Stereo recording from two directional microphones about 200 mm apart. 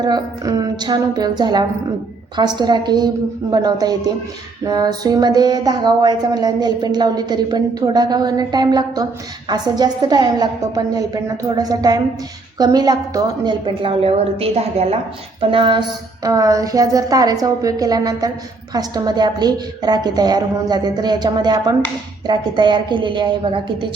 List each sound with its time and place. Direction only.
0.0 s speech: 20° right (ahead or behind)
15.4 s a sound: 25° right (ahead or behind)
18.7 s speech: 20° right (ahead or behind)